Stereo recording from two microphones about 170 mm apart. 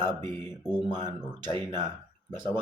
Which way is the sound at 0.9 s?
25° right (ahead or behind).